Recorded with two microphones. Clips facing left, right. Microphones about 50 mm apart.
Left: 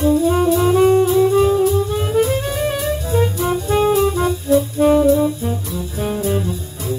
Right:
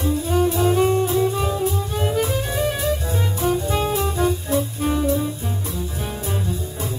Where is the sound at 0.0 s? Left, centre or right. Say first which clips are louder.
Left 6 dB; left.